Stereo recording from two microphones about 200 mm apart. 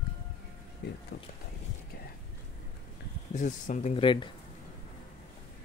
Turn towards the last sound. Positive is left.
turn(degrees=25)  # may be behind; listen again after turning